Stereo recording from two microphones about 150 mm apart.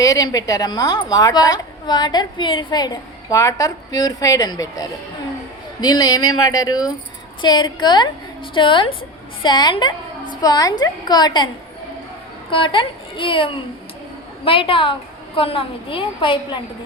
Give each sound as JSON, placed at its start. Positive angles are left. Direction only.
{"t": 0.0, "sound": "a woman's voice", "side_deg": 25}
{"t": 12.5, "sound": "a woman's voice", "side_deg": 35}